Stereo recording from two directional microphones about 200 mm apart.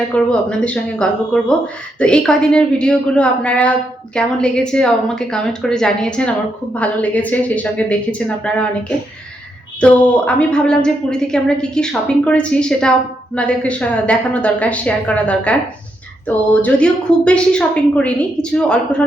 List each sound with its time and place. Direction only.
0.1 s a woman's voice: 5° left (ahead or behind)
9.8 s a woman's voice: 5° left (ahead or behind)